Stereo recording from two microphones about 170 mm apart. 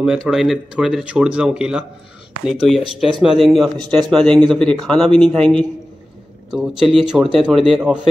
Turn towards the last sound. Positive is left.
turn(degrees=-5)  # may be behind; listen again after turning